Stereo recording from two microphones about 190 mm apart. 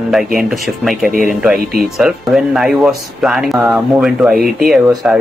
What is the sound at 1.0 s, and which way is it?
Speech, 45° right (ahead or behind).